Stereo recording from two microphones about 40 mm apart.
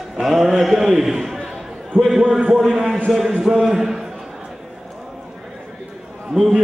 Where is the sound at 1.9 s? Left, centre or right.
Right.